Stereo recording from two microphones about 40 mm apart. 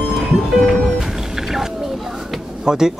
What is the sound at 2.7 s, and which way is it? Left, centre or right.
Speech, centre.